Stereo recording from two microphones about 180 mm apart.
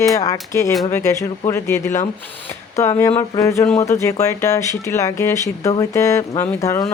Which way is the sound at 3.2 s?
15° left (ahead or behind).